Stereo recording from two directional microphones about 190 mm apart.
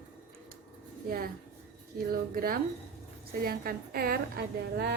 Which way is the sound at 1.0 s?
50° right (ahead or behind).